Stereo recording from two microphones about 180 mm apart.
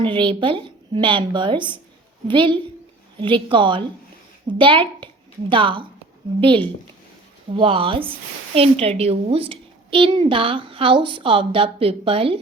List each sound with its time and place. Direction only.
0.0 s a woman's voice: 30° right (ahead or behind)